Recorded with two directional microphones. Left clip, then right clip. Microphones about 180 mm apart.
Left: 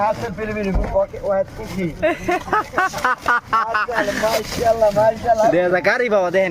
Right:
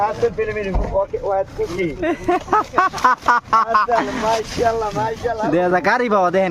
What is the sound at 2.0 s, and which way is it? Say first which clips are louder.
Speech: left 2 dB; 25° right (ahead or behind).